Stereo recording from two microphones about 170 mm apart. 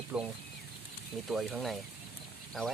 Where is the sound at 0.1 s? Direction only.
5° right (ahead or behind).